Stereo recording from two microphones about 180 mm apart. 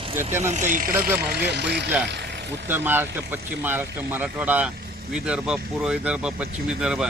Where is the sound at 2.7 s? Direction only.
10° right (ahead or behind).